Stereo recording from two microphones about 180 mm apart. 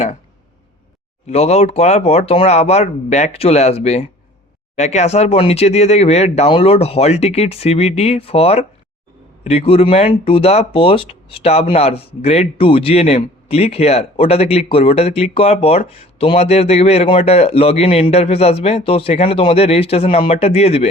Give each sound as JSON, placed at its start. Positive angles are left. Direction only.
{"t": 1.3, "sound": "speech", "side_deg": 35}